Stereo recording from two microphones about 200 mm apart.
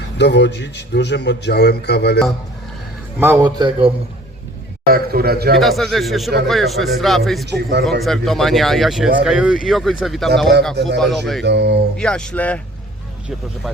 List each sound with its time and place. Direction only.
0.2 s a man's voice: 60° left (ahead or behind)
3.2 s a man's voice: 15° right (ahead or behind)
4.9 s a man's voice: 50° right (ahead or behind)
5.5 s a man's voice: centre (ahead or behind)
10.8 s speech: 60° right (ahead or behind)
11.0 s speech: centre (ahead or behind)
11.4 s speech: 60° right (ahead or behind)
11.9 s speech: 5° left (ahead or behind)